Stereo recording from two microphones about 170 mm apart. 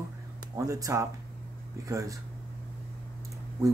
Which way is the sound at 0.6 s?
20° right (ahead or behind).